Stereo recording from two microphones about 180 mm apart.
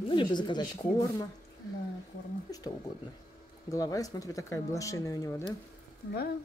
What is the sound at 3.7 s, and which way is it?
Speech, 20° left (ahead or behind).